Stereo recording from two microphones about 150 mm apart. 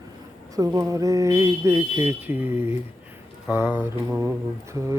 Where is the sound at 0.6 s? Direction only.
25° right (ahead or behind).